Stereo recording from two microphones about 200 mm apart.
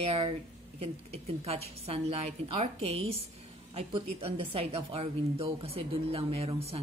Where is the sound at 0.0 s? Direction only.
25° right (ahead or behind).